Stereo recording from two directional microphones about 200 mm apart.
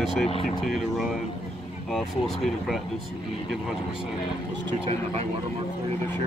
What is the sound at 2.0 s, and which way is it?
Speech, centre (ahead or behind).